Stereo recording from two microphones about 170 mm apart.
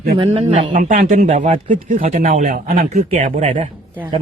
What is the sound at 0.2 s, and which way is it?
Speech, 35° right (ahead or behind).